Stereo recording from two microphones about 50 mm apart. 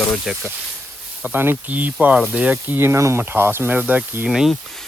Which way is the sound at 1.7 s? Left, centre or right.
Right.